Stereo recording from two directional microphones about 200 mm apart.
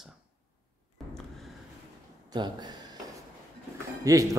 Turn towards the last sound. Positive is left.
turn(degrees=-15)  # may be behind; listen again after turning